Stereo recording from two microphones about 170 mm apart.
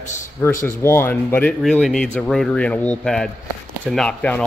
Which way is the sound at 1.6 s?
Centre (ahead or behind).